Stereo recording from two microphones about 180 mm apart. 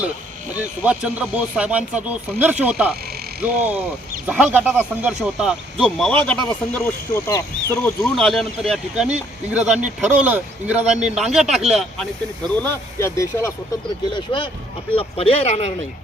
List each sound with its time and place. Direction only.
0.5 s speech: 5° right (ahead or behind); by 7.4 s 15° left (ahead or behind)
8.1 s speech: centre (ahead or behind)
12.5 s speech: 10° left (ahead or behind)
14.3 s speech: 30° left (ahead or behind)